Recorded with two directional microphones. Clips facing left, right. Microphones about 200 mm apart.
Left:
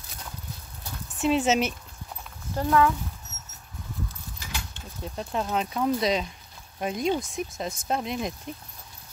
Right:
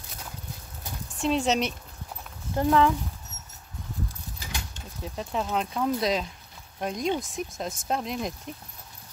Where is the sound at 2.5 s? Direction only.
20° right (ahead or behind).